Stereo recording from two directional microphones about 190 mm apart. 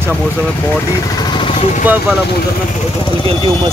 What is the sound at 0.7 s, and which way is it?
Vehicle, 20° left (ahead or behind).